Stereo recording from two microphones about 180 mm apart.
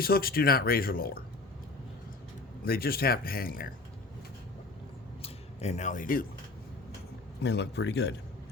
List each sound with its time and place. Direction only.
0.0 s speech: 55° left (ahead or behind)
2.6 s speech: 55° left (ahead or behind)
5.2 s a sound: 35° left (ahead or behind)
7.4 s speech: 70° left (ahead or behind)